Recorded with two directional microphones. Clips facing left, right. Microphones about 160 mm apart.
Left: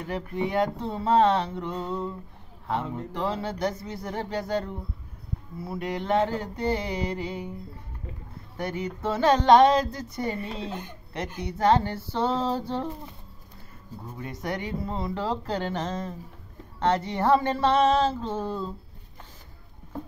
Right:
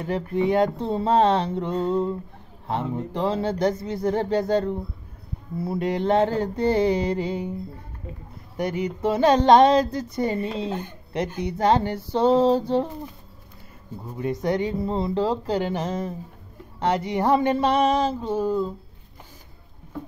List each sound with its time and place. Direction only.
0.0 s speech: 25° right (ahead or behind)
8.5 s speech: 15° right (ahead or behind)
14.1 s speech: 20° right (ahead or behind)
15.2 s speech: 15° right (ahead or behind)